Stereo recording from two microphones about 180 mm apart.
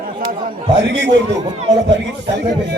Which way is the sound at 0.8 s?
80° right.